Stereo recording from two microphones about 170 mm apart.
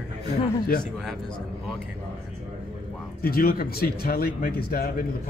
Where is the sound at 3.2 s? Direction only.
60° left (ahead or behind).